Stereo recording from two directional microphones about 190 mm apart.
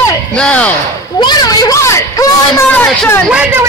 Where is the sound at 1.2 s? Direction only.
20° left (ahead or behind).